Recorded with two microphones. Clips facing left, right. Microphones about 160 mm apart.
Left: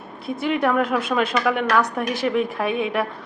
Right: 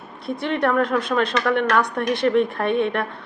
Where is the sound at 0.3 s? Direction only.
5° left (ahead or behind).